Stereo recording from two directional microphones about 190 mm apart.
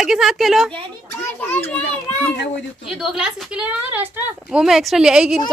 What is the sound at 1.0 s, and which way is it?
Children playing, 10° left (ahead or behind).